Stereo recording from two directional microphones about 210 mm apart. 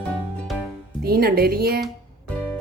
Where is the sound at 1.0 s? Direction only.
45° right (ahead or behind).